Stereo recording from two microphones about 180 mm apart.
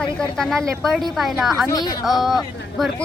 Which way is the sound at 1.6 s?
20° left (ahead or behind).